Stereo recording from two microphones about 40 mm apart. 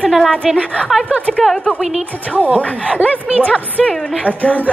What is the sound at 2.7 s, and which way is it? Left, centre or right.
Speech, right.